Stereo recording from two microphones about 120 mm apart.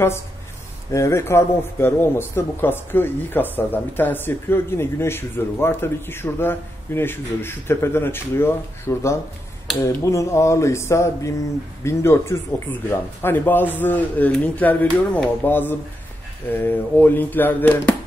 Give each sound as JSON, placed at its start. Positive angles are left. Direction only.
{"t": 0.9, "sound": "a man's voice", "side_deg": 25}